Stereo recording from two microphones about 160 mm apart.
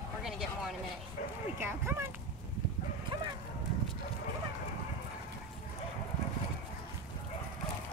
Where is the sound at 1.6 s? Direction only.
15° right (ahead or behind).